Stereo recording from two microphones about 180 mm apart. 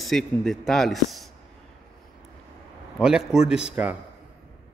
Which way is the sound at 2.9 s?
5° right (ahead or behind).